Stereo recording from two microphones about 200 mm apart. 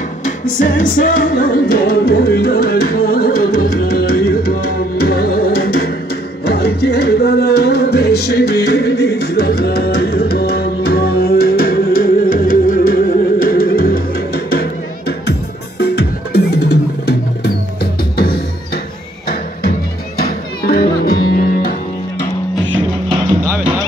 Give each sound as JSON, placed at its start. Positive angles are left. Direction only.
{"t": 0.2, "sound": "music", "side_deg": 40}
{"t": 15.8, "sound": "drum", "side_deg": 55}
{"t": 18.1, "sound": "music", "side_deg": 50}
{"t": 20.2, "sound": "music", "side_deg": 50}